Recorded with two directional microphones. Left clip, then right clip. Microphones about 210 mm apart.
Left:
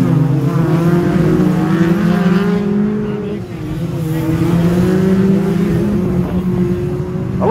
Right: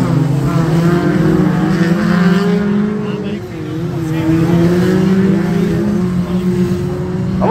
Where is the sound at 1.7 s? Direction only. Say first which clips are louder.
Even; 30° left (ahead or behind).